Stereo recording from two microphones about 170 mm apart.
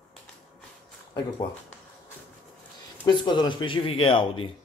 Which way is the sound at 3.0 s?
25° left (ahead or behind).